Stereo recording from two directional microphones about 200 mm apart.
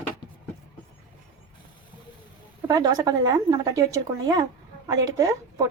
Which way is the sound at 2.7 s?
20° right (ahead or behind).